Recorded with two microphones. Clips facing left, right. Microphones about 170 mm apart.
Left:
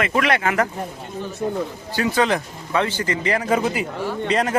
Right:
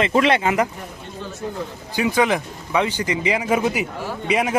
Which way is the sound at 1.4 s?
55° left (ahead or behind).